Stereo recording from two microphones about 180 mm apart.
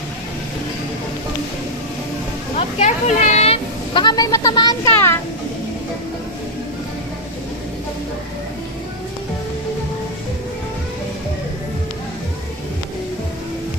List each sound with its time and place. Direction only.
2.6 s a woman's voice: 35° left (ahead or behind)